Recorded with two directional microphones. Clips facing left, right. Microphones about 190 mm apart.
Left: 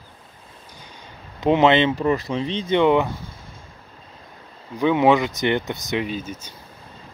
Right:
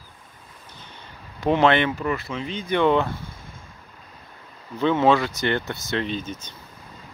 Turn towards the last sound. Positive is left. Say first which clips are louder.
# left 1 dB
turn(degrees=10)  # may be behind; listen again after turning